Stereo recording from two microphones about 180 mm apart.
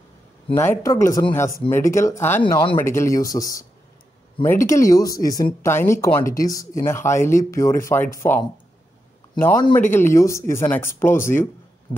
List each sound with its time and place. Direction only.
0.6 s speech: 15° left (ahead or behind)
2.4 s speech: 30° left (ahead or behind)
2.8 s speech: 15° left (ahead or behind)
9.8 s speech: 10° left (ahead or behind)